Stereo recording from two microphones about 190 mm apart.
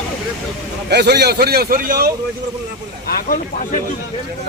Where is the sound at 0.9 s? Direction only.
60° right (ahead or behind).